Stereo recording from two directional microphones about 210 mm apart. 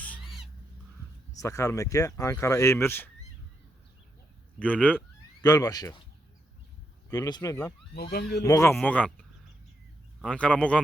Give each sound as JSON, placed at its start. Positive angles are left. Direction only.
{"t": 0.0, "sound": "cat", "side_deg": 5}
{"t": 1.4, "sound": "speech", "side_deg": 15}
{"t": 4.6, "sound": "speech", "side_deg": 5}
{"t": 5.4, "sound": "speech", "side_deg": 15}
{"t": 7.1, "sound": "speech", "side_deg": 20}
{"t": 10.2, "sound": "a man's voice", "side_deg": 5}